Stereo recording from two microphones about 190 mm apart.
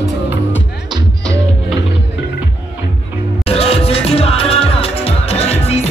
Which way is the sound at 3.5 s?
30° left (ahead or behind).